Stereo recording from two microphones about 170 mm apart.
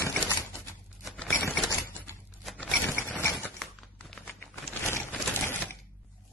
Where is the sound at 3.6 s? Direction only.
Centre (ahead or behind).